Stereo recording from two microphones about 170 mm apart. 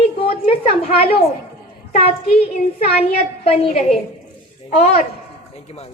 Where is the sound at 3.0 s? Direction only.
35° left (ahead or behind).